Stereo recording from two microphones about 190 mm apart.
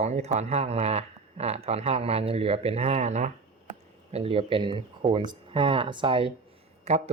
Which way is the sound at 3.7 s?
30° right (ahead or behind).